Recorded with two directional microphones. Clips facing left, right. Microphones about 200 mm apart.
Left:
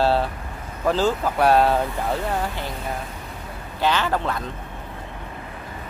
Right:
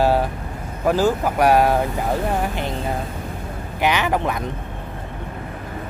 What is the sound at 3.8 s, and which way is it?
Speech, 15° right (ahead or behind).